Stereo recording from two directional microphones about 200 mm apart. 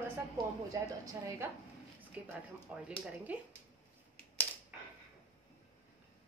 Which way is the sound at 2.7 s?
5° right (ahead or behind).